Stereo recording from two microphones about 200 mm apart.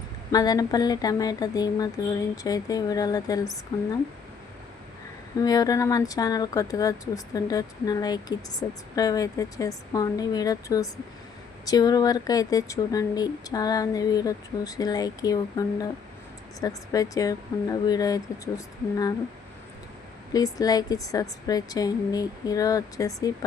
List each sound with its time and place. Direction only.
0.3 s speech: 20° left (ahead or behind)
5.4 s speech: 20° left (ahead or behind)
20.3 s speech: 20° left (ahead or behind)